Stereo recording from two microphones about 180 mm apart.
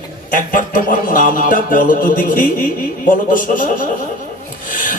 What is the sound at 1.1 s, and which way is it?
Speech, 50° left (ahead or behind).